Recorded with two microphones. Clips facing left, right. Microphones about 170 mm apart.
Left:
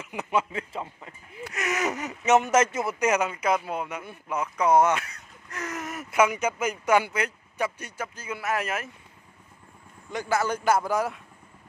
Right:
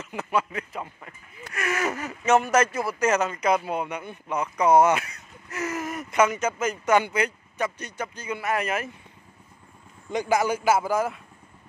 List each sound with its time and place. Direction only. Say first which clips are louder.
0.0 s speech: even; 15° left (ahead or behind)
10.1 s speech: right 3 dB; 15° right (ahead or behind)